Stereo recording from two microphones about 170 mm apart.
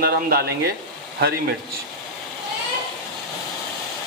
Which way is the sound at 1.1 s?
75° right (ahead or behind).